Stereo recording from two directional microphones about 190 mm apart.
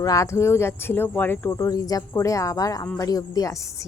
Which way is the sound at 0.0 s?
15° left (ahead or behind).